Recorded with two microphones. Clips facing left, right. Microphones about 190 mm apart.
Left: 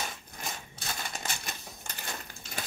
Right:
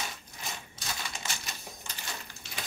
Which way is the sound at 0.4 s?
55° left (ahead or behind).